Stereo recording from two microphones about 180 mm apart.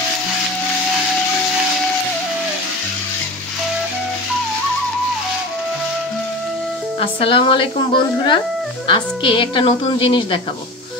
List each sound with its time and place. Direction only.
7.0 s speech: 30° left (ahead or behind)